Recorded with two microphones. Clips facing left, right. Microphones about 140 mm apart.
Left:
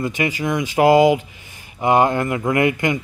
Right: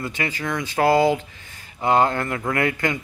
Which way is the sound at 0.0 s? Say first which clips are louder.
Left 6 dB; 15° left (ahead or behind).